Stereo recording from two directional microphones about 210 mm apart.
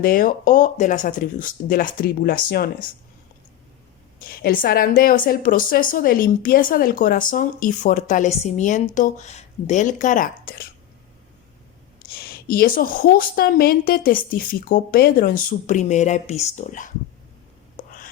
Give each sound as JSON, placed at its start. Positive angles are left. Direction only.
{"t": 0.0, "sound": "a woman's voice", "side_deg": 40}
{"t": 4.3, "sound": "a woman's voice", "side_deg": 40}
{"t": 12.1, "sound": "a woman's voice", "side_deg": 45}
{"t": 17.7, "sound": "whispering", "side_deg": 40}